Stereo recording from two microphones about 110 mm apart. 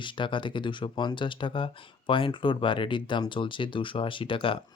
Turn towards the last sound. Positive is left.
turn(degrees=50)  # may be behind; listen again after turning